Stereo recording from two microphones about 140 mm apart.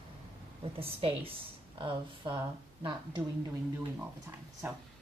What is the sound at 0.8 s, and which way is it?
Speech, 40° right (ahead or behind).